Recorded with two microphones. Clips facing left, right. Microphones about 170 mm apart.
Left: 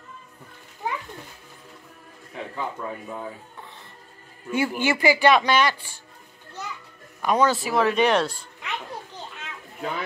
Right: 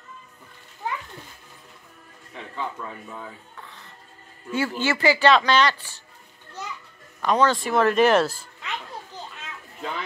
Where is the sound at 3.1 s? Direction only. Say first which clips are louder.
Left 4 dB; 20° left (ahead or behind).